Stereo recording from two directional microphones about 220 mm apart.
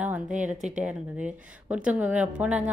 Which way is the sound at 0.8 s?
5° right (ahead or behind).